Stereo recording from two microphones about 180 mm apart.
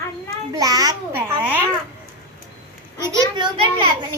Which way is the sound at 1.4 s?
10° right (ahead or behind).